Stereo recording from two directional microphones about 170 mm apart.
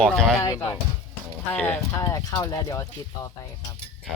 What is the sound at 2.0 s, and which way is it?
Speech, 20° left (ahead or behind).